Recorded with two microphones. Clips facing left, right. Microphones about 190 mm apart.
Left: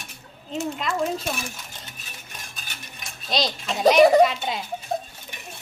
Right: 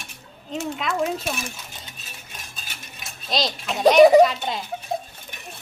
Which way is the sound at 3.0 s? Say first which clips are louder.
Even; centre (ahead or behind).